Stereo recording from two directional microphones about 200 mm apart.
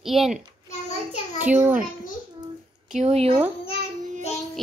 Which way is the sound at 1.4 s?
10° right (ahead or behind).